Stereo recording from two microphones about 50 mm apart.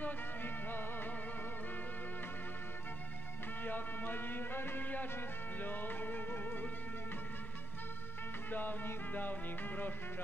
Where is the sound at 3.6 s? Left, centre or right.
Left.